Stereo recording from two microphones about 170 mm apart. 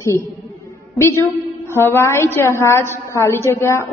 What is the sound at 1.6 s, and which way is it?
Speech, 15° left (ahead or behind).